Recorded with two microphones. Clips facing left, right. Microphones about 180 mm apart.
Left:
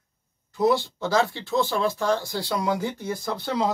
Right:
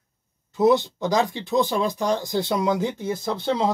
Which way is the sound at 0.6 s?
20° right (ahead or behind).